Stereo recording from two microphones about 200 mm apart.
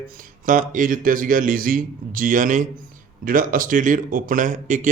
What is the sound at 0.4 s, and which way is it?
A man's voice, 40° right (ahead or behind).